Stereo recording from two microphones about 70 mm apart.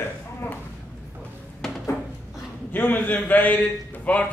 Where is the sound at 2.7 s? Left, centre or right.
Left.